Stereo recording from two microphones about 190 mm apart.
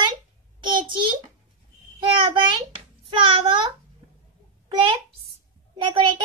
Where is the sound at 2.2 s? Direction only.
25° right (ahead or behind).